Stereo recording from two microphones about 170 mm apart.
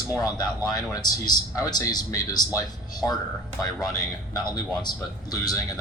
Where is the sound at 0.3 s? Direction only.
20° left (ahead or behind).